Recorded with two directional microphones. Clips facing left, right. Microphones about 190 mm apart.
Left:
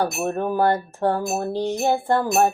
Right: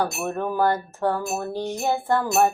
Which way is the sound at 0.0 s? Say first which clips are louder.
Left 2 dB; 20° left (ahead or behind).